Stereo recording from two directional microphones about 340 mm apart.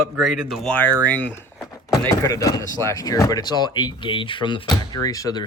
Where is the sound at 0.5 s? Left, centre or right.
Centre.